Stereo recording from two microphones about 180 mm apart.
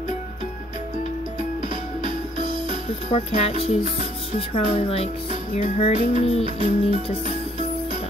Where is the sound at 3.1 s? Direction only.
35° left (ahead or behind).